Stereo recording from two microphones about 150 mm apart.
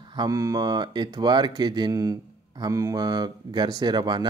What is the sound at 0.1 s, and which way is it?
Speech, 25° right (ahead or behind).